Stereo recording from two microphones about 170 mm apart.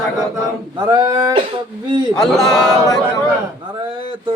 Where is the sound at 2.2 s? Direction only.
5° left (ahead or behind).